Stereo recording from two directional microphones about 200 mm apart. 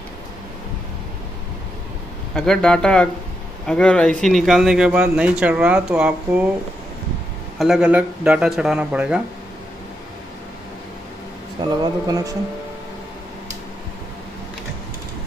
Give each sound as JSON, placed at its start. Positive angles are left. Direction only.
{"t": 2.3, "sound": "speech", "side_deg": 5}
{"t": 7.5, "sound": "speech", "side_deg": 0}
{"t": 11.8, "sound": "speech", "side_deg": -20}